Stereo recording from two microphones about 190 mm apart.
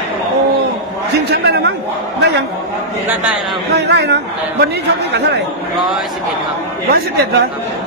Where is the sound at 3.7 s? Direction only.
60° right (ahead or behind).